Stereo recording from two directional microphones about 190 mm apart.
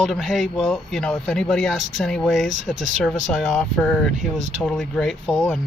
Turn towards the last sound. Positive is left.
turn(degrees=0)  # may be behind; listen again after turning